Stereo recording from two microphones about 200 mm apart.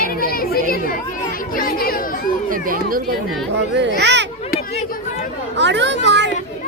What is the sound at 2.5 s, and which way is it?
Speech, 45° right (ahead or behind).